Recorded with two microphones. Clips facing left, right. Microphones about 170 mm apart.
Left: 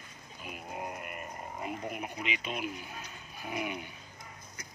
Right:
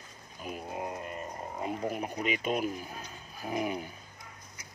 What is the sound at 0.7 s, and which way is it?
Speech, 25° right (ahead or behind).